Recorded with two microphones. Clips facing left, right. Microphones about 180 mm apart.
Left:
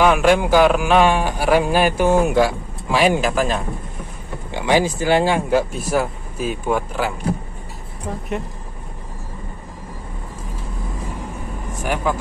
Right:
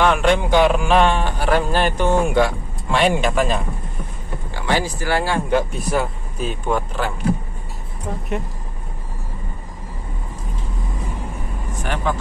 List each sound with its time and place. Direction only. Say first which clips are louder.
0.0 s speech: left 2 dB; 5° left (ahead or behind)
4.5 s speech: left 4 dB; 15° left (ahead or behind)
5.5 s speech: left 1 dB; centre (ahead or behind)
11.8 s speech: left 2 dB; 10° left (ahead or behind)